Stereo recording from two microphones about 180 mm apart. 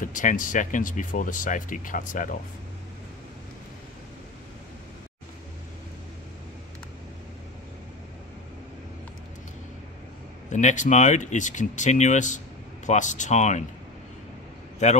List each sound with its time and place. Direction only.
0.0 s speech: 45° left (ahead or behind)
10.5 s speech: 40° left (ahead or behind)
14.8 s speech: 40° left (ahead or behind)